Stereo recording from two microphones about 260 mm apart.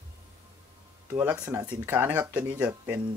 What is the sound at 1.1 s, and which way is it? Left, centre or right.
Speech, centre.